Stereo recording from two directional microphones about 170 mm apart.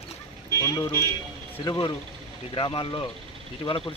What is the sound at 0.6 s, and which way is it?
Speech, 20° left (ahead or behind).